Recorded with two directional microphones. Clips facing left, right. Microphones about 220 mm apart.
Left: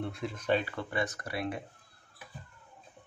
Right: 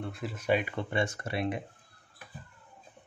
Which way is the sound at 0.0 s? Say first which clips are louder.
Even; centre (ahead or behind).